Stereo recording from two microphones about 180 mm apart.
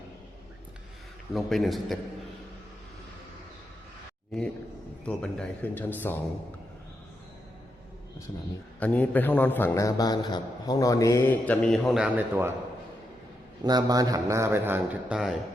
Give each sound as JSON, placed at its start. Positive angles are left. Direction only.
{"t": 1.3, "sound": "a man's voice", "side_deg": 0}
{"t": 4.3, "sound": "a man's voice", "side_deg": 0}
{"t": 8.8, "sound": "a man's voice", "side_deg": 10}
{"t": 13.6, "sound": "a man's voice", "side_deg": -20}